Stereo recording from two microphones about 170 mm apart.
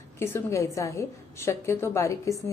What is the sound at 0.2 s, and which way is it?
A woman's voice, 15° left (ahead or behind).